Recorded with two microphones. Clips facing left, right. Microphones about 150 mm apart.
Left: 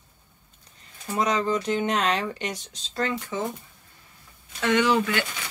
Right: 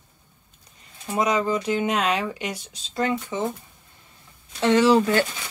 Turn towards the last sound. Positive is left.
turn(degrees=-35)  # may be behind; listen again after turning